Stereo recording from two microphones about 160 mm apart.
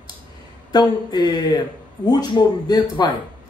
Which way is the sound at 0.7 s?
25° left (ahead or behind).